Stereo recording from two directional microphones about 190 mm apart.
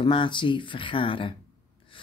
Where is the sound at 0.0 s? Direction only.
25° left (ahead or behind).